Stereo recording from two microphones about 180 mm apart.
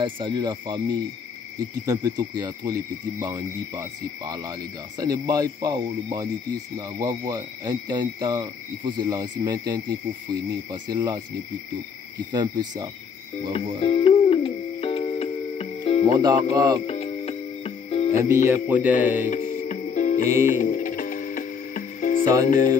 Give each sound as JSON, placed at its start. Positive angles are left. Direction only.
{"t": 0.0, "sound": "owl", "side_deg": -25}
{"t": 12.3, "sound": "owl", "side_deg": -25}
{"t": 13.5, "sound": "music", "side_deg": 30}
{"t": 16.1, "sound": "owl", "side_deg": -25}
{"t": 16.8, "sound": "music", "side_deg": 35}
{"t": 18.1, "sound": "music", "side_deg": -15}
{"t": 19.2, "sound": "music", "side_deg": 45}